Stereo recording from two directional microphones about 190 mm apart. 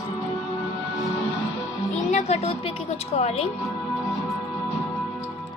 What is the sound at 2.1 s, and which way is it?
Music, 35° left (ahead or behind).